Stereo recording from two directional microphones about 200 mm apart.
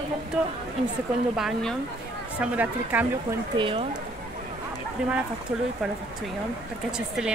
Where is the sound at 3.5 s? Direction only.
25° right (ahead or behind).